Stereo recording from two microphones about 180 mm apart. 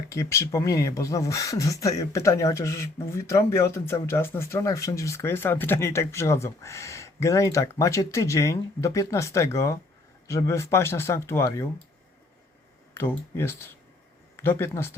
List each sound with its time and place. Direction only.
0.1 s speech: 15° left (ahead or behind)
12.9 s speech: 15° left (ahead or behind)